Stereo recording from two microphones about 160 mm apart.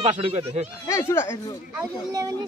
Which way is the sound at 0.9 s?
15° left (ahead or behind).